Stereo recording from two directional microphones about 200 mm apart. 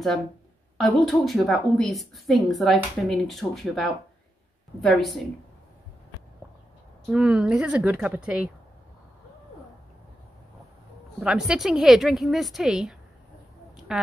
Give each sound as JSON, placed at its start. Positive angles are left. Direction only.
{"t": 0.7, "sound": "a woman's voice", "side_deg": 0}
{"t": 7.1, "sound": "a woman's voice", "side_deg": -5}
{"t": 11.1, "sound": "a woman's voice", "side_deg": -5}